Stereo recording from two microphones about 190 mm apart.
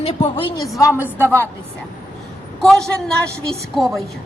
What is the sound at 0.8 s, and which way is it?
Speech, 15° left (ahead or behind).